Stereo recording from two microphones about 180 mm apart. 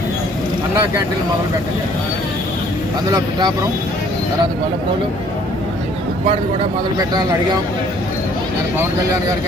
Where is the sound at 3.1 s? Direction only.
20° right (ahead or behind).